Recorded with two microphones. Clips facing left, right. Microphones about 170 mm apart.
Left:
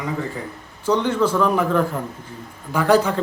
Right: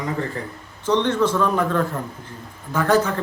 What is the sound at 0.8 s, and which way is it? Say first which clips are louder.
A man's voice: even; 10° left (ahead or behind).